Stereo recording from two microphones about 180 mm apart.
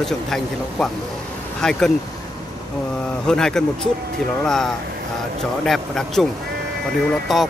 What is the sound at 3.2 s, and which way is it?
Speech, 5° left (ahead or behind).